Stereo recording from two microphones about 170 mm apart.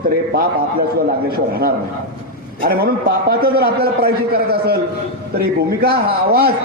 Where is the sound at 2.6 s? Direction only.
65° right (ahead or behind).